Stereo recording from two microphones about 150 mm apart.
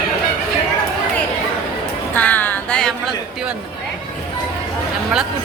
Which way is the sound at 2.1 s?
10° left (ahead or behind).